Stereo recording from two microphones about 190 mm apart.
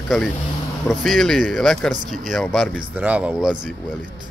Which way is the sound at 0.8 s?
Centre (ahead or behind).